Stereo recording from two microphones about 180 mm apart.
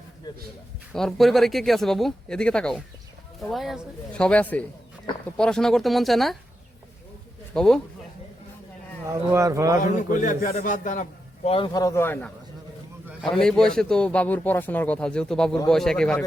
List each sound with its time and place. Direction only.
0.9 s a man's voice: centre (ahead or behind)
7.5 s speech: 5° left (ahead or behind)
9.0 s a man's voice: 15° right (ahead or behind)
9.8 s a man's voice: 45° left (ahead or behind); by 12.3 s 10° left (ahead or behind)
13.4 s a man's voice: 5° left (ahead or behind)